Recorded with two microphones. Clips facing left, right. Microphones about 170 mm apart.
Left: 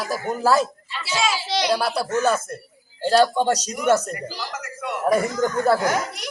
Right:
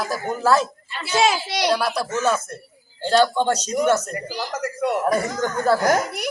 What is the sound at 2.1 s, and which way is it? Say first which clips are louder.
Speech: left 1 dB; centre (ahead or behind).